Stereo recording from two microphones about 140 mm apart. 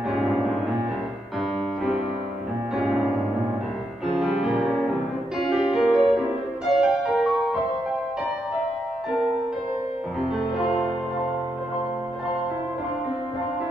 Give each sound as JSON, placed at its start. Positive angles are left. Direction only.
{"t": 0.1, "sound": "music", "side_deg": -5}
{"t": 2.8, "sound": "music", "side_deg": -5}
{"t": 4.1, "sound": "music", "side_deg": 0}